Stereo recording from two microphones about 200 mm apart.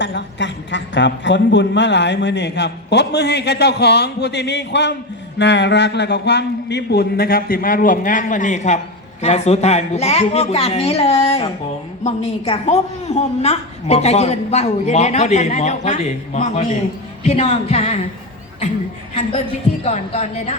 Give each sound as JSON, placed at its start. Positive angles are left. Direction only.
{"t": 0.0, "sound": "a woman's voice", "side_deg": 60}
{"t": 19.8, "sound": "a woman's voice", "side_deg": 35}